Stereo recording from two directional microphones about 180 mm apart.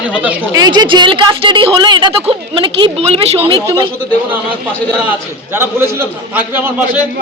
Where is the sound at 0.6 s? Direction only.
25° right (ahead or behind).